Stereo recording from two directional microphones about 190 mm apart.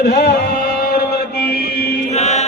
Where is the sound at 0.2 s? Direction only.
55° left (ahead or behind).